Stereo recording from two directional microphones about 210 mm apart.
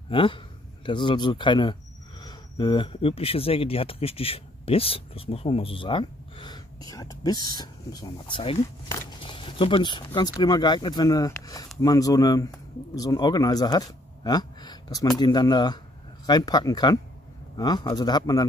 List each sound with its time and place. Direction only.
0.1 s speech: 25° left (ahead or behind)